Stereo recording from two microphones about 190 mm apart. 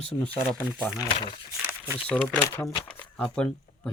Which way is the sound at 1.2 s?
25° left (ahead or behind).